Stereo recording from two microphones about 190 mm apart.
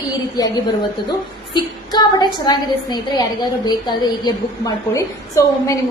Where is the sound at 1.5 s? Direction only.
25° left (ahead or behind).